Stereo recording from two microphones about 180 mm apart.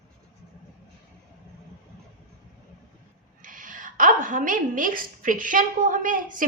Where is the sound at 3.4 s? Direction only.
45° right (ahead or behind).